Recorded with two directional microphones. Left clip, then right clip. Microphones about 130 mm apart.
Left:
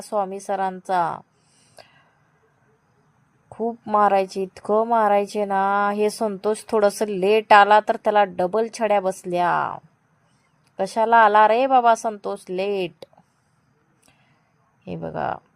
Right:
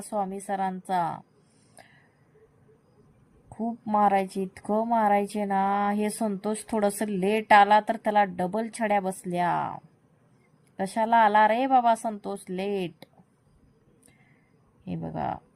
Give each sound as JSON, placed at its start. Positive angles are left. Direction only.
{"t": 0.0, "sound": "a woman's voice", "side_deg": 20}
{"t": 3.8, "sound": "a woman's voice", "side_deg": 20}
{"t": 14.8, "sound": "a woman's voice", "side_deg": 20}